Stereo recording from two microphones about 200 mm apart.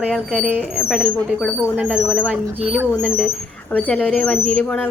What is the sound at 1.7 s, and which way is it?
Speech, 5° right (ahead or behind).